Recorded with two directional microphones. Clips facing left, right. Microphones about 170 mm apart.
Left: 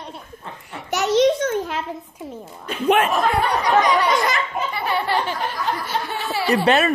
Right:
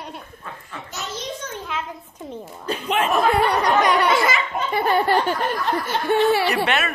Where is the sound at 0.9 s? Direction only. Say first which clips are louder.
Left 16 dB; 75° left (ahead or behind).